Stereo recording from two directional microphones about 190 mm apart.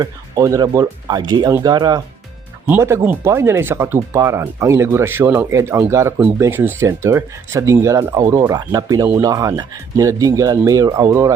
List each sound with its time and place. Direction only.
0.0 s speech: 15° right (ahead or behind)